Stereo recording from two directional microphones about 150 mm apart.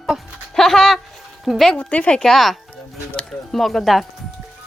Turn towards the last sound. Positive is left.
turn(degrees=0)  # may be behind; listen again after turning